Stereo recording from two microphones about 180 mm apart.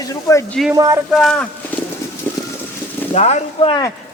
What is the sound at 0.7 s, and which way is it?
Speech, 20° right (ahead or behind).